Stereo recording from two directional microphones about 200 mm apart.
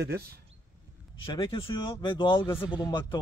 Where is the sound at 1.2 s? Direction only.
25° left (ahead or behind).